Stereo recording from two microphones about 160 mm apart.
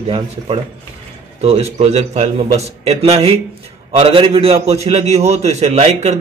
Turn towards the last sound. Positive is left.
turn(degrees=-45)  # may be behind; listen again after turning